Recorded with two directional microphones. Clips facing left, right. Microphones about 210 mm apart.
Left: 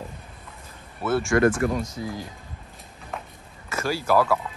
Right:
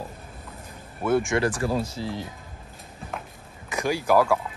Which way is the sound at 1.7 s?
30° right (ahead or behind).